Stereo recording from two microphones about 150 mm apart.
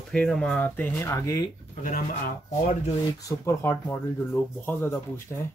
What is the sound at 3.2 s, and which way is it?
Speech, 15° left (ahead or behind).